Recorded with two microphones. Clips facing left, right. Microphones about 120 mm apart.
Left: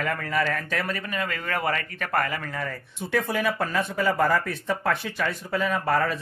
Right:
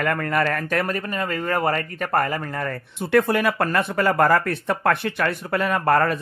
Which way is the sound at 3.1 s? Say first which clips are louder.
Right 6 dB; 65° right (ahead or behind).